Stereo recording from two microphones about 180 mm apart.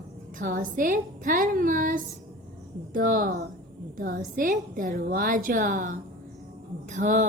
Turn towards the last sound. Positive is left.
turn(degrees=-45)  # may be behind; listen again after turning